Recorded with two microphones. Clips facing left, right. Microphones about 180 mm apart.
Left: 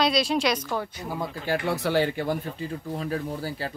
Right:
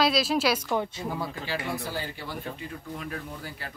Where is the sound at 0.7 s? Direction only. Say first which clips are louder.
Right 2 dB; 20° right (ahead or behind).